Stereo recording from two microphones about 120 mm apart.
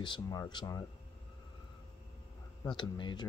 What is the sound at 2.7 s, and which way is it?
Speech, 40° left (ahead or behind).